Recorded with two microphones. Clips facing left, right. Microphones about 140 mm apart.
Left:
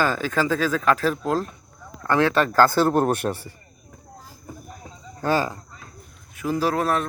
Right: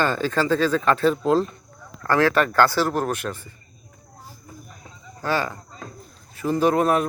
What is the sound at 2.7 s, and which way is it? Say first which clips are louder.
Speech: left 3 dB; 50° left (ahead or behind).